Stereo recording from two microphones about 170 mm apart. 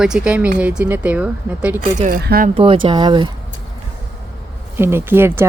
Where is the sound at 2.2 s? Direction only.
65° right (ahead or behind).